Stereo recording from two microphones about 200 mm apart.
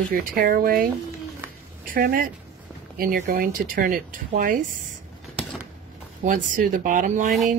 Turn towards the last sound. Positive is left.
turn(degrees=-40)  # may be behind; listen again after turning